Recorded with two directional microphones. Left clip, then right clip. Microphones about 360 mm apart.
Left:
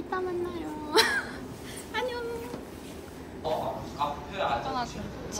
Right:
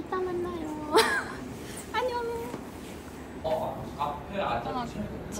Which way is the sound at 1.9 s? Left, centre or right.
Centre.